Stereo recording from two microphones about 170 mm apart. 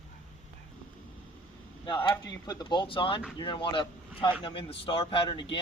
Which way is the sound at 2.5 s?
25° left (ahead or behind).